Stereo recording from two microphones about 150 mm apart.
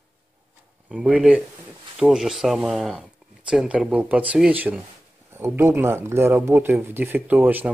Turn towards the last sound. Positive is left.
turn(degrees=-10)  # may be behind; listen again after turning